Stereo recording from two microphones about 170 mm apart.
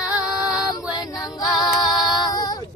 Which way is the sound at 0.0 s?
5° right (ahead or behind).